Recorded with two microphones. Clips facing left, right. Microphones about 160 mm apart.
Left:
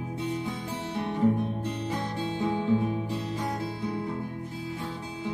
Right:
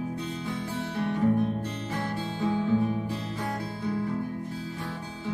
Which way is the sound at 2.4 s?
20° left (ahead or behind).